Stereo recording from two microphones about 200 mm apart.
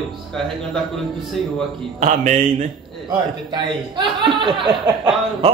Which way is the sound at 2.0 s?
35° right (ahead or behind).